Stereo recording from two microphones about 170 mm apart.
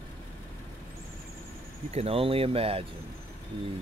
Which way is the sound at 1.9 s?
35° right (ahead or behind).